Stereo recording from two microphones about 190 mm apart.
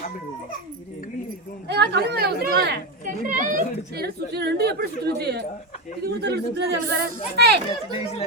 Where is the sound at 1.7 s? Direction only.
65° right (ahead or behind).